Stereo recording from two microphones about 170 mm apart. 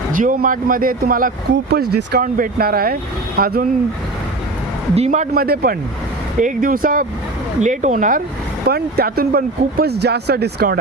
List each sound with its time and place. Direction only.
0.1 s speech: 50° right (ahead or behind)
1.7 s speech: 70° right (ahead or behind)
4.9 s speech: 40° right (ahead or behind)
5.3 s speech: 60° right (ahead or behind)
8.6 s speech: 65° right (ahead or behind)